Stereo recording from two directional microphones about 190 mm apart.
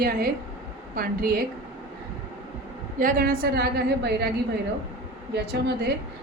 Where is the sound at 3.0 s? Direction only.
50° right (ahead or behind).